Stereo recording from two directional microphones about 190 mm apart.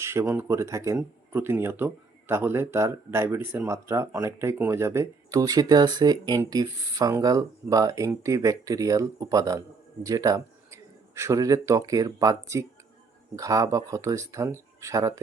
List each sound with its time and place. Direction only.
0.0 s speech: 15° right (ahead or behind)